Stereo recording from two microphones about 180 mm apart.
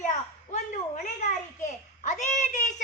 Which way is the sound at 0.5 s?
45° left (ahead or behind).